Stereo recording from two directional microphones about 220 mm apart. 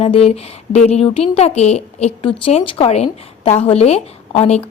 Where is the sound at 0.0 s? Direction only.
25° left (ahead or behind).